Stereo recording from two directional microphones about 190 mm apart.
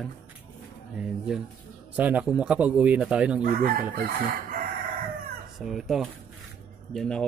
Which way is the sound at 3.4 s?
50° right (ahead or behind).